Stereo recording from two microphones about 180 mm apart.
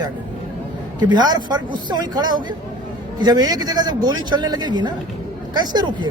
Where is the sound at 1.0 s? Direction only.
25° right (ahead or behind).